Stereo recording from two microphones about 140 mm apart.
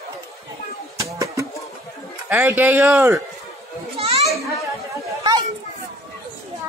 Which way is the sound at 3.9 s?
45° right (ahead or behind).